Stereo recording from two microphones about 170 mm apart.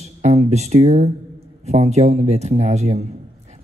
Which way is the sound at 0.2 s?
40° right (ahead or behind).